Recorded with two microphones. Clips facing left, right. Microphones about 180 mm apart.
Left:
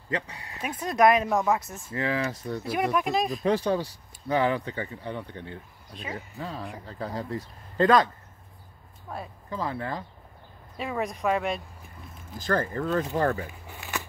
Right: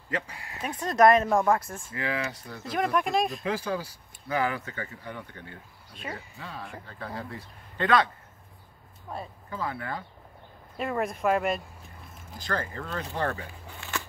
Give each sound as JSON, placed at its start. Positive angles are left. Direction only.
{"t": 0.1, "sound": "speech", "side_deg": 25}
{"t": 0.7, "sound": "speech", "side_deg": 5}
{"t": 1.9, "sound": "speech", "side_deg": 30}
{"t": 2.7, "sound": "speech", "side_deg": 5}
{"t": 4.3, "sound": "speech", "side_deg": 30}
{"t": 6.3, "sound": "speech", "side_deg": 35}
{"t": 9.5, "sound": "speech", "side_deg": 30}
{"t": 10.8, "sound": "speech", "side_deg": 0}
{"t": 12.4, "sound": "speech", "side_deg": 45}
{"t": 13.7, "sound": "shuffling cards", "side_deg": 15}